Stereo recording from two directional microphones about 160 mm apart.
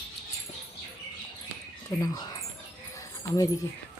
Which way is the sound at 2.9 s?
20° left (ahead or behind).